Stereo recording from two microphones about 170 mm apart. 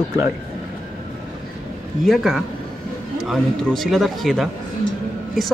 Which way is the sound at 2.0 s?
Centre (ahead or behind).